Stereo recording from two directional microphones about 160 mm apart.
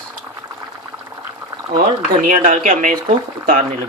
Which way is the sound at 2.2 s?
55° right (ahead or behind).